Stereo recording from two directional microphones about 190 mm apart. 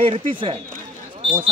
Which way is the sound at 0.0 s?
25° right (ahead or behind).